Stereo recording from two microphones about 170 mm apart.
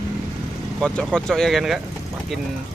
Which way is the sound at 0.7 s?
5° left (ahead or behind).